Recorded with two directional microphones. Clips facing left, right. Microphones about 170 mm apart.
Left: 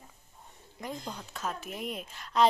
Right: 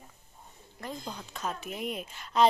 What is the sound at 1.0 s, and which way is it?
A woman's voice, centre (ahead or behind).